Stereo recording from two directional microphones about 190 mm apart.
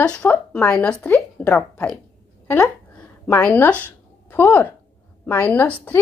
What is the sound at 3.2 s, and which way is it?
Speech, 10° left (ahead or behind).